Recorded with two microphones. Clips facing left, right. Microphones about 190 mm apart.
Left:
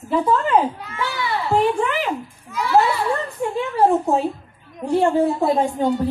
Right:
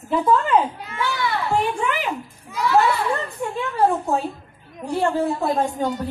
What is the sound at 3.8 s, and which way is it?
A woman's voice, 20° left (ahead or behind).